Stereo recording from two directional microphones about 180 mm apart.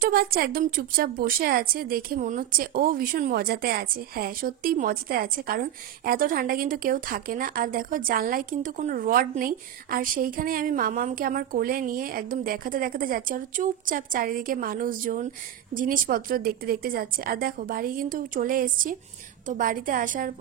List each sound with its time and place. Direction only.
0.0 s a woman's voice: 55° right (ahead or behind)